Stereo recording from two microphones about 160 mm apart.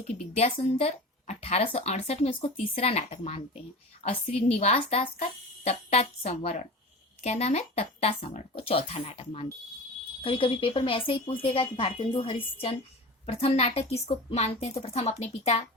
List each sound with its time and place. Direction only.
0.3 s speech: 40° left (ahead or behind)